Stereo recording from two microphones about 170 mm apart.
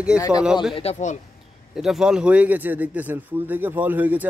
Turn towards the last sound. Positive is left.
turn(degrees=-10)  # may be behind; listen again after turning